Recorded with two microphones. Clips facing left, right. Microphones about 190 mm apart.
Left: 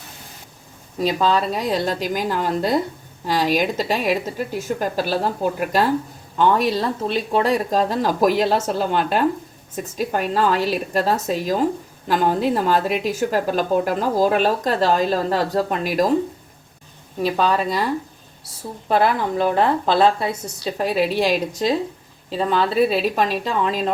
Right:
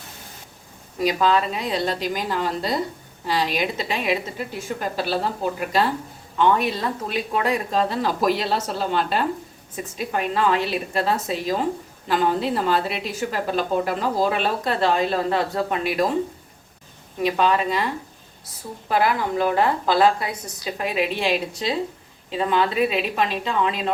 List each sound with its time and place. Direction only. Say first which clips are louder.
0.9 s a woman's voice: left 1 dB; 30° left (ahead or behind)
17.2 s a woman's voice: left 1 dB; 35° left (ahead or behind)
18.9 s a woman's voice: left 2 dB; 25° left (ahead or behind); by 21.8 s 45° left (ahead or behind)
22.3 s a woman's voice: left 1 dB; 35° left (ahead or behind)